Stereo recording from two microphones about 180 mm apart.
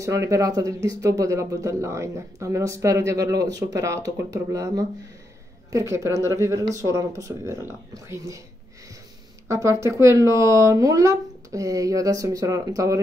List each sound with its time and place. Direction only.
0.0 s speech: 15° right (ahead or behind)
9.5 s speech: 15° right (ahead or behind)